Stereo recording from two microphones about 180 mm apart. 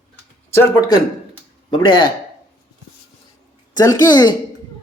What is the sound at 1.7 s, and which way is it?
Speech, 25° left (ahead or behind).